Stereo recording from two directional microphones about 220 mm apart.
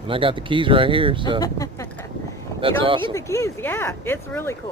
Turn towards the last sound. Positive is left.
turn(degrees=10)  # may be behind; listen again after turning